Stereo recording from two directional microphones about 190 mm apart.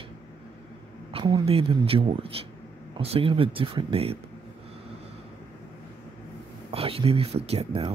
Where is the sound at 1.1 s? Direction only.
25° right (ahead or behind).